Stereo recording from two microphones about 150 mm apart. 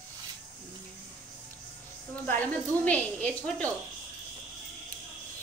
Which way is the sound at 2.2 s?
10° left (ahead or behind).